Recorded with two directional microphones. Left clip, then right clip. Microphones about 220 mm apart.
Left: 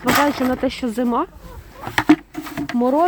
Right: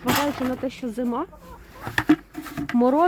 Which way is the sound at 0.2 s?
30° left (ahead or behind).